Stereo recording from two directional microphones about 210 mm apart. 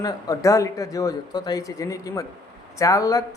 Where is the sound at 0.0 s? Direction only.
15° left (ahead or behind).